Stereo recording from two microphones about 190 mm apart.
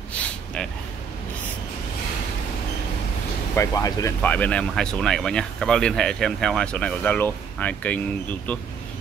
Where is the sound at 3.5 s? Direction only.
15° left (ahead or behind).